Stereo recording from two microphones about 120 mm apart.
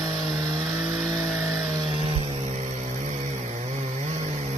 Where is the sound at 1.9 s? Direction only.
50° right (ahead or behind).